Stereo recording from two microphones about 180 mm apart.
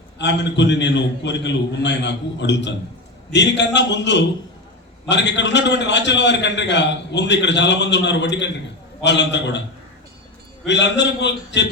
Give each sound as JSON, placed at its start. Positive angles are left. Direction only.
{"t": 0.2, "sound": "a man's voice", "side_deg": 75}
{"t": 10.7, "sound": "a man's voice", "side_deg": 80}